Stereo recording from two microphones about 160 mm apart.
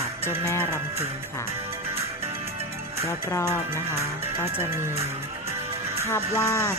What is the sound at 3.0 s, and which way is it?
Speech, 15° left (ahead or behind).